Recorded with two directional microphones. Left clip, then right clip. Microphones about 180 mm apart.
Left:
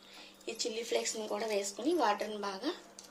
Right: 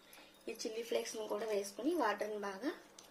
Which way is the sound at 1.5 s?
40° right (ahead or behind).